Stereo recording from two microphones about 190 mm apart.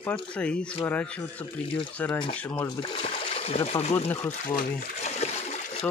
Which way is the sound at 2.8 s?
30° left (ahead or behind).